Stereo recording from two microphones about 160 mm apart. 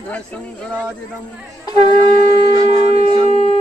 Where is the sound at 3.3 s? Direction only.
40° right (ahead or behind).